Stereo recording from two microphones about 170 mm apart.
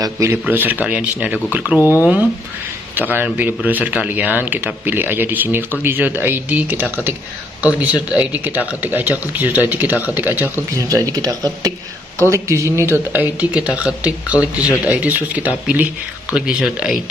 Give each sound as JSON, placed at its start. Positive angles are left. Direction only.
{"t": 0.0, "sound": "speech", "side_deg": -15}
{"t": 3.0, "sound": "speech", "side_deg": -10}